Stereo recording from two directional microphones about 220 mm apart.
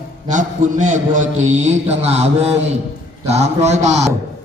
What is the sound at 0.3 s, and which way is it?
A man's voice, 35° right (ahead or behind).